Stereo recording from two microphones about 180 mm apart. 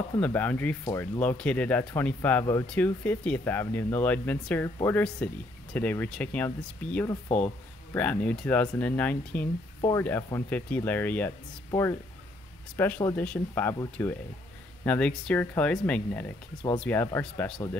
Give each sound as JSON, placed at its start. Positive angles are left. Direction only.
{"t": 0.2, "sound": "speech", "side_deg": 10}
{"t": 0.8, "sound": "speech", "side_deg": 20}
{"t": 1.2, "sound": "speech", "side_deg": 5}